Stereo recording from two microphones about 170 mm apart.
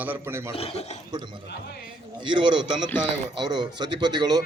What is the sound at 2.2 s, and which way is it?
A man's voice, 25° right (ahead or behind).